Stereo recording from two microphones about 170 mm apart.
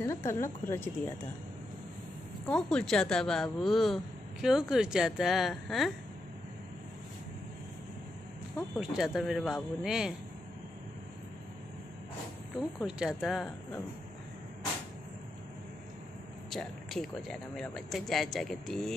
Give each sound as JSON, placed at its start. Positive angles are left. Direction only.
{"t": 0.0, "sound": "speech", "side_deg": 15}
{"t": 2.4, "sound": "a woman's voice", "side_deg": 5}
{"t": 8.7, "sound": "a woman's voice", "side_deg": -5}
{"t": 12.7, "sound": "a woman's voice", "side_deg": -5}
{"t": 16.4, "sound": "a woman's voice", "side_deg": 0}